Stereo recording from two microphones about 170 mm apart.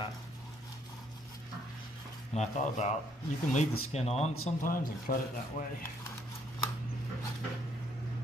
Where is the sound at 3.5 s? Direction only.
40° left (ahead or behind).